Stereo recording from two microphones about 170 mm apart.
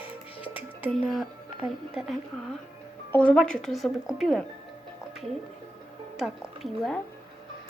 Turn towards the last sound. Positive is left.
turn(degrees=0)  # may be behind; listen again after turning